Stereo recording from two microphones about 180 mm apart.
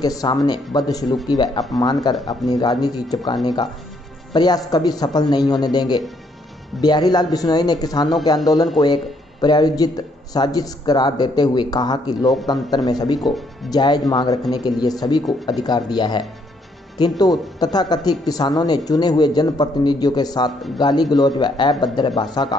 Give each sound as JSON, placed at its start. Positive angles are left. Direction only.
{"t": 0.0, "sound": "speech", "side_deg": 20}